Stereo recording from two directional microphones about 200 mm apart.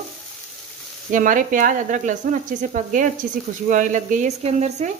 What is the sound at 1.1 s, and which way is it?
A woman's voice, 40° right (ahead or behind).